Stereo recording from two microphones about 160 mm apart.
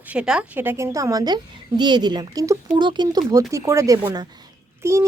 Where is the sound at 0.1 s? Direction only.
5° right (ahead or behind).